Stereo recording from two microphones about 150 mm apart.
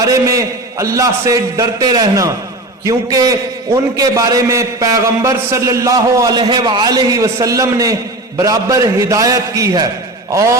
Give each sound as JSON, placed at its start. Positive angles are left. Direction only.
{"t": 0.0, "sound": "a man's voice", "side_deg": -20}